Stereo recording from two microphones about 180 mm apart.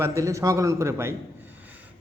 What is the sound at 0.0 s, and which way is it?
A man's voice, 15° right (ahead or behind).